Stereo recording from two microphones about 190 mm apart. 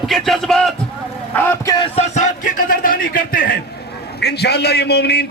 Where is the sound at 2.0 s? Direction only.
40° left (ahead or behind).